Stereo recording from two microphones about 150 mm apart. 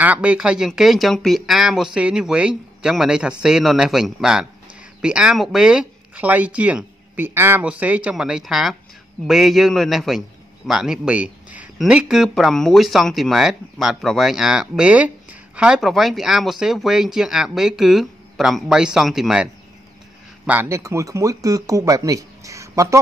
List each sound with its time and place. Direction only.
0.0 s speech: 10° right (ahead or behind)
20.4 s speech: 15° right (ahead or behind)